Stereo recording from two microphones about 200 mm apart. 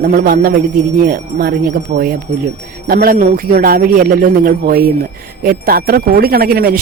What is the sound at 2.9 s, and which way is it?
Speech, 45° right (ahead or behind).